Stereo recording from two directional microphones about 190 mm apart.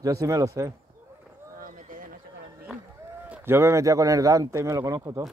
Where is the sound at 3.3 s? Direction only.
10° right (ahead or behind).